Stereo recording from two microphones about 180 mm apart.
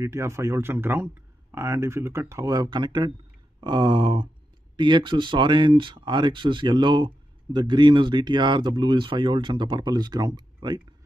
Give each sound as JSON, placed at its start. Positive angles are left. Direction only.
{"t": 0.0, "sound": "speech", "side_deg": -15}